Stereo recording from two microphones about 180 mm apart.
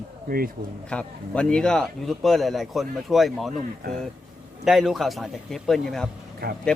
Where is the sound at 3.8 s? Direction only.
55° right (ahead or behind).